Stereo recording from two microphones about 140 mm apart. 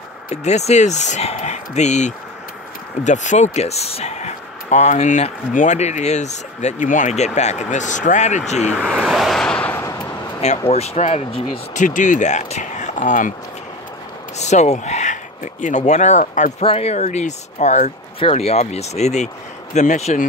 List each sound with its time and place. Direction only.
0.4 s speech: 55° left (ahead or behind)
8.7 s a sound: 5° right (ahead or behind); by 10.3 s 20° left (ahead or behind)
10.6 s speech: 50° left (ahead or behind)
11.5 s speech: 65° left (ahead or behind)
14.4 s speech: 55° left (ahead or behind)
16.6 s speech: 50° left (ahead or behind)